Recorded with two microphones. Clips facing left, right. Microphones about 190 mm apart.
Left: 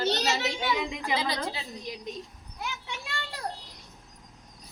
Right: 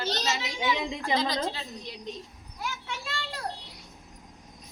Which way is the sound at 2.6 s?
15° left (ahead or behind).